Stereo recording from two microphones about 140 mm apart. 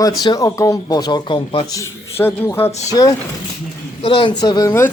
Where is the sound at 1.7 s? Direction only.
20° left (ahead or behind).